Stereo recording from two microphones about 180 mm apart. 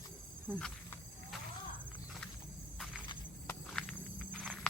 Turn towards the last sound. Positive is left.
turn(degrees=5)  # may be behind; listen again after turning